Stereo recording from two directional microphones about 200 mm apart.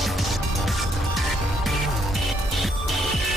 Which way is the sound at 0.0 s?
Centre (ahead or behind).